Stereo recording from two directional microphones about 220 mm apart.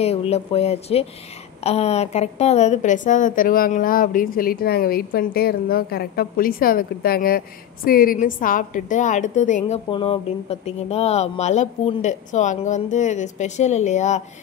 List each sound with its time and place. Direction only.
0.0 s a woman's voice: 30° left (ahead or behind)